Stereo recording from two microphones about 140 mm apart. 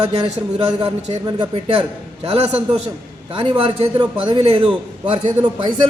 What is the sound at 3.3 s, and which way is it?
A man's voice, 35° right (ahead or behind).